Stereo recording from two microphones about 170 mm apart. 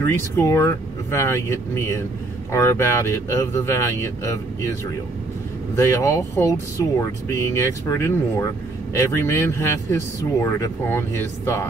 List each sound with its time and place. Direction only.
0.0 s speech: 15° left (ahead or behind)
5.8 s speech: 15° left (ahead or behind)